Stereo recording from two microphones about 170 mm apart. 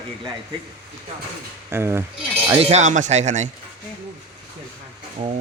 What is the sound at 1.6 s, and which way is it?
Speech, 15° right (ahead or behind).